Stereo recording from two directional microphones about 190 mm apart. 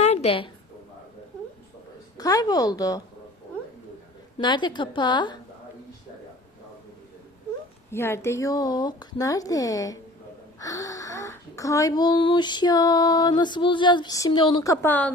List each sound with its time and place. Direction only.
0.0 s a sound: 35° left (ahead or behind)
2.1 s speech: 20° left (ahead or behind)
4.4 s speech: 25° left (ahead or behind)
7.9 s speech: 15° left (ahead or behind)